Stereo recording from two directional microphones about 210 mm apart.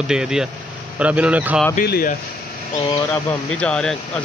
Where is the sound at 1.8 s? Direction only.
45° left (ahead or behind).